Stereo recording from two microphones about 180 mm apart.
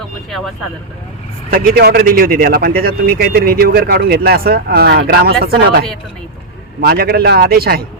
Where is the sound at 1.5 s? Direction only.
55° right (ahead or behind).